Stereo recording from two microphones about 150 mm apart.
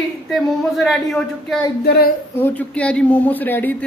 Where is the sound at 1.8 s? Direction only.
90° left.